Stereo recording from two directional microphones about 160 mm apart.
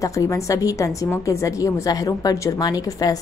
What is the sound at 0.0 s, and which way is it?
A woman's voice, 20° left (ahead or behind).